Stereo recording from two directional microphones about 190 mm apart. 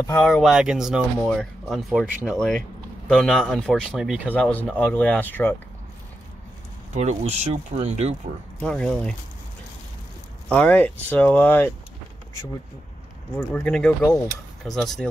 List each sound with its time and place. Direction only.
0.2 s speech: centre (ahead or behind)
4.4 s speech: 5° left (ahead or behind)
6.9 s speech: 35° right (ahead or behind)
8.5 s speech: 5° left (ahead or behind)
10.5 s speech: 5° left (ahead or behind)
13.4 s speech: 10° left (ahead or behind)